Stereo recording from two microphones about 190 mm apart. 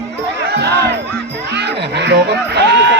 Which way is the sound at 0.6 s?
60° right (ahead or behind).